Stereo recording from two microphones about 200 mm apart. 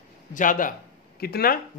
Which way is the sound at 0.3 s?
40° left (ahead or behind).